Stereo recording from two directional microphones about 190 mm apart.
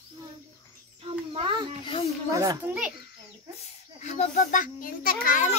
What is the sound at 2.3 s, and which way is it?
Children playing, 15° right (ahead or behind).